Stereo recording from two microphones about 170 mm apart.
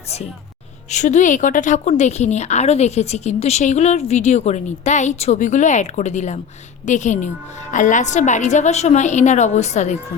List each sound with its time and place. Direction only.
0.9 s a woman's voice: 45° left (ahead or behind)